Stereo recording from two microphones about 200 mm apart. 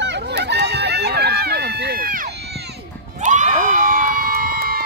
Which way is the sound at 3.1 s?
35° right (ahead or behind).